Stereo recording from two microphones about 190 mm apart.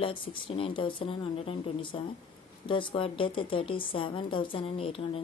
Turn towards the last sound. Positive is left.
turn(degrees=30)  # may be behind; listen again after turning